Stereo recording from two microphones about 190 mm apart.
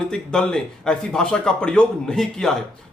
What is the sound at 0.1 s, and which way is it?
Speech, 5° left (ahead or behind).